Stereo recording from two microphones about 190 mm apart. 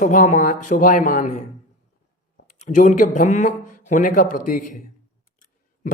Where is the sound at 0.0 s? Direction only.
45° left (ahead or behind).